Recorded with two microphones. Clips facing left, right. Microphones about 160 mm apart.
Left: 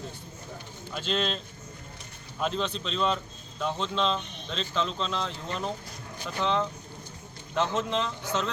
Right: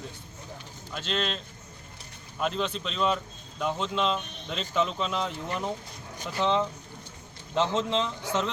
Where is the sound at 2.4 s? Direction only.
Centre (ahead or behind).